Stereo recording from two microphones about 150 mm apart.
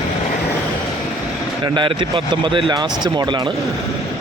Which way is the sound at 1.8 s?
35° right (ahead or behind).